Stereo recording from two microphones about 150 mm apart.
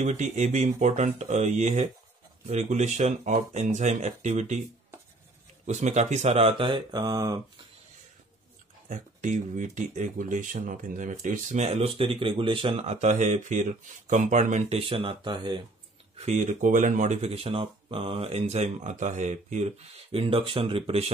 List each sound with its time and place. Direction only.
0.0 s speech: 50° right (ahead or behind)
5.7 s speech: 50° right (ahead or behind); by 7.6 s 25° right (ahead or behind)
8.8 s speech: 55° right (ahead or behind)
11.6 s speech: 45° right (ahead or behind)
16.2 s speech: 50° right (ahead or behind)